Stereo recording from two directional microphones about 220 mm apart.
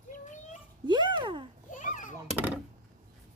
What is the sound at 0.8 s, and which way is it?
Speech, 20° right (ahead or behind).